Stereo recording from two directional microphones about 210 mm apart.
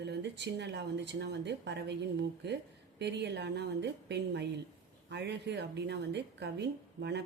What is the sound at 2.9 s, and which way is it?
A woman's voice, 55° right (ahead or behind).